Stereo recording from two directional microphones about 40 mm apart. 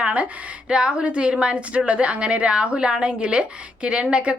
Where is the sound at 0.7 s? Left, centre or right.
Right.